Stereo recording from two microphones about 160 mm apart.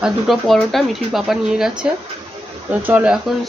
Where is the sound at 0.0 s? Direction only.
Centre (ahead or behind).